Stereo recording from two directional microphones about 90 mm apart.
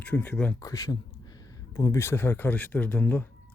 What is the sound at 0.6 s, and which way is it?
Speech, 40° left (ahead or behind).